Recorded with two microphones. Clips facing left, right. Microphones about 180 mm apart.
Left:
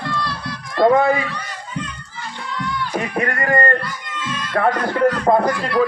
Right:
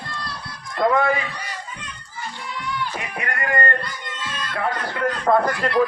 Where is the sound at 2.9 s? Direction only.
40° left (ahead or behind).